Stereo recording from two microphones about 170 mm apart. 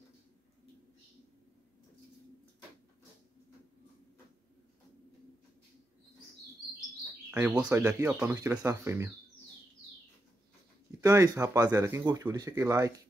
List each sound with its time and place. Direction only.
7.2 s bird: 10° right (ahead or behind)
7.5 s speech: 15° right (ahead or behind)
11.0 s speech: 20° right (ahead or behind)